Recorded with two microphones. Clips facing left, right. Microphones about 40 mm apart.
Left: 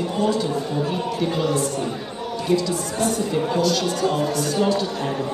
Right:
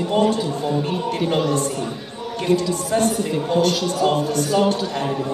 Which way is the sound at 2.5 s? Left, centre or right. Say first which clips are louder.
Right 3 dB; right.